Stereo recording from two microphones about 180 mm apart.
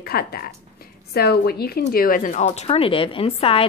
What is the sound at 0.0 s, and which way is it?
A woman's voice, 60° left (ahead or behind).